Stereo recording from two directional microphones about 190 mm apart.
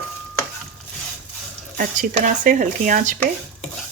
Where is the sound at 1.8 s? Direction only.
45° right (ahead or behind).